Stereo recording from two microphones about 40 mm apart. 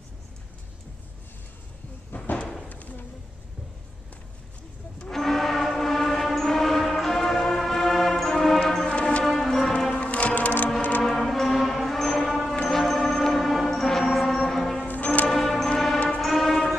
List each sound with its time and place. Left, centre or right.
2.1 s a sound: left
5.1 s train: centre
8.3 s music: centre
8.7 s music: left
9.2 s music: centre
9.9 s music: left
10.8 s music: left
11.1 s music: centre
14.9 s music: left
15.2 s music: centre